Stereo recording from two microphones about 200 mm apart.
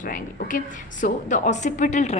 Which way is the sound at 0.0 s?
45° left (ahead or behind).